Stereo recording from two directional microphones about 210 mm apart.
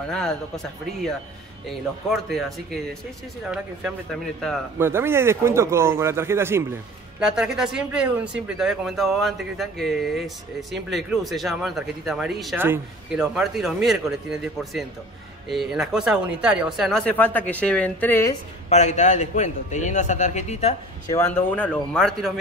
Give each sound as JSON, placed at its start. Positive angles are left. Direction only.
{"t": 0.1, "sound": "speech", "side_deg": 5}
{"t": 2.0, "sound": "speech", "side_deg": 0}
{"t": 4.7, "sound": "speech", "side_deg": -10}
{"t": 18.7, "sound": "a man's voice", "side_deg": 35}
{"t": 21.1, "sound": "speech", "side_deg": 10}